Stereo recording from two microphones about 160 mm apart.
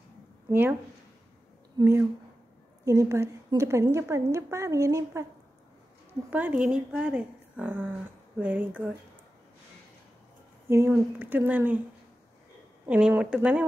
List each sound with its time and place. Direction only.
0.5 s a woman's voice: 15° right (ahead or behind)
1.8 s a woman's voice: 15° right (ahead or behind)
6.3 s a woman's voice: 10° right (ahead or behind)
10.7 s a woman's voice: 15° right (ahead or behind)
12.8 s a woman's voice: 10° right (ahead or behind)